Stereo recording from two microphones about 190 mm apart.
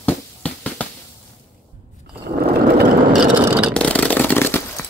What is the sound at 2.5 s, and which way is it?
Mechanisms, 55° right (ahead or behind).